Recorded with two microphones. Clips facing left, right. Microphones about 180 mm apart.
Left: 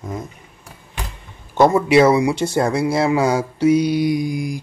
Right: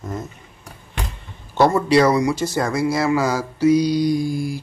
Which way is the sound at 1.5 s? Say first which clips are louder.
Left 2 dB; 20° left (ahead or behind).